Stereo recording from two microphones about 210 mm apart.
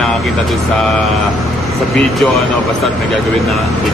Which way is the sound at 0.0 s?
Centre (ahead or behind).